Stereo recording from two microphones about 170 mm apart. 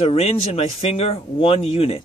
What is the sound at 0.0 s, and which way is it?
Speech, 35° left (ahead or behind).